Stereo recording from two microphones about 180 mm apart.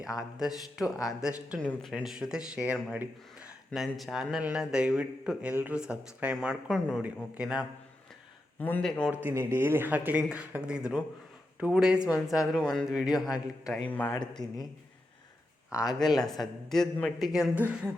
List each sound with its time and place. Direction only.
0.2 s a man's voice: centre (ahead or behind)
8.5 s a man's voice: 10° left (ahead or behind)
9.2 s a man's voice: 15° right (ahead or behind)
13.1 s a man's voice: 20° left (ahead or behind)
13.3 s a man's voice: centre (ahead or behind)
13.8 s speech: 10° left (ahead or behind)
16.2 s a man's voice: centre (ahead or behind)